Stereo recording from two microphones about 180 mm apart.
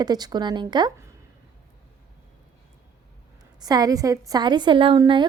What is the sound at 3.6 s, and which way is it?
A woman's voice, 20° right (ahead or behind).